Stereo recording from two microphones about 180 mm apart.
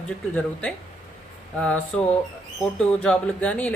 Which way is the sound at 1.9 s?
5° left (ahead or behind).